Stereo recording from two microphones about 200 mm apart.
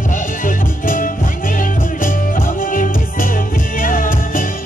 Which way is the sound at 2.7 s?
45° left (ahead or behind).